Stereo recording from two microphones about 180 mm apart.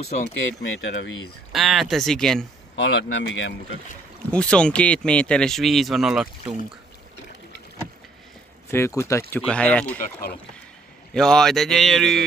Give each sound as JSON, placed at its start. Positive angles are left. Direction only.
{"t": 0.6, "sound": "speech", "side_deg": 90}
{"t": 1.5, "sound": "speech", "side_deg": 0}
{"t": 2.7, "sound": "speech", "side_deg": 90}
{"t": 4.3, "sound": "speech", "side_deg": 5}
{"t": 8.6, "sound": "speech", "side_deg": 15}
{"t": 9.9, "sound": "speech", "side_deg": 50}
{"t": 11.1, "sound": "speech", "side_deg": 5}